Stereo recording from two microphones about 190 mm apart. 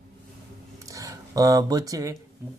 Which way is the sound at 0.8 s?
15° right (ahead or behind).